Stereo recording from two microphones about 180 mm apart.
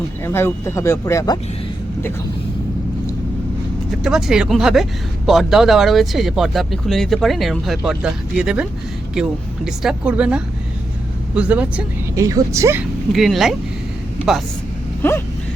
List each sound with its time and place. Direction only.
0.3 s speech: 15° left (ahead or behind)
4.0 s speech: 5° right (ahead or behind)
9.6 s speech: 5° right (ahead or behind)
13.1 s speech: centre (ahead or behind)
15.0 s speech: 10° left (ahead or behind)